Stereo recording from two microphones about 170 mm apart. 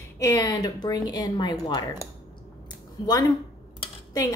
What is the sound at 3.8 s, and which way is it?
Dishes, 20° left (ahead or behind).